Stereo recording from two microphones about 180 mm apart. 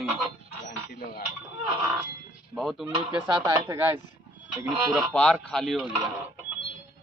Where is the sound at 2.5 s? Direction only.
Centre (ahead or behind).